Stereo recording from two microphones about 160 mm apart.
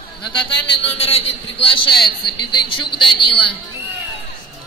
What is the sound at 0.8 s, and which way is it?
A man's voice, 40° left (ahead or behind).